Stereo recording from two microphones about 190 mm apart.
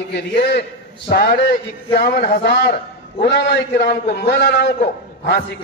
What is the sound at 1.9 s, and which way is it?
A man's voice, 55° left (ahead or behind).